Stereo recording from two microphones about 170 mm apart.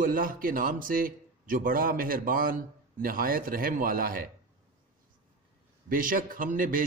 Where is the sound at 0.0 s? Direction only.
55° right (ahead or behind).